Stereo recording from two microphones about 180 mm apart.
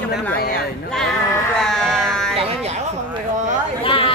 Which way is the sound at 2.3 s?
35° right (ahead or behind).